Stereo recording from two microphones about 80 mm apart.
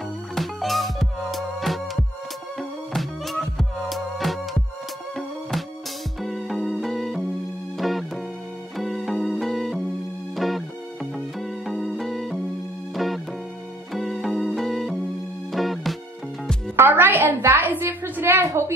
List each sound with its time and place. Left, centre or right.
0.3 s music: centre
6.2 s music: centre
16.7 s a sound: right